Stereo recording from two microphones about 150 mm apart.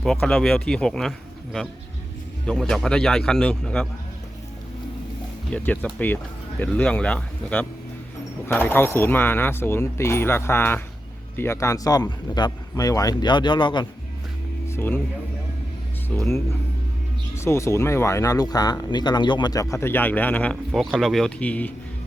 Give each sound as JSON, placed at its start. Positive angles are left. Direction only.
{"t": 0.0, "sound": "a man's voice", "side_deg": 5}
{"t": 2.5, "sound": "a man's voice", "side_deg": 5}
{"t": 5.5, "sound": "speech", "side_deg": 10}
{"t": 14.7, "sound": "speech", "side_deg": 15}
{"t": 16.1, "sound": "speech", "side_deg": 10}
{"t": 17.3, "sound": "a man's voice", "side_deg": 15}